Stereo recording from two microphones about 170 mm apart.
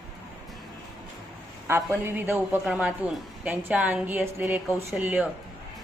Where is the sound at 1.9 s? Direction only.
10° right (ahead or behind).